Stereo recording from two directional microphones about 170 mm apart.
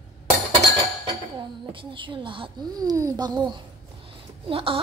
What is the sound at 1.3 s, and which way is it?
A woman's voice, 30° right (ahead or behind).